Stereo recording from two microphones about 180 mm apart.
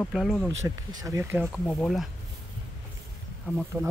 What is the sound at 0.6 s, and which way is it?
Speech, 20° right (ahead or behind).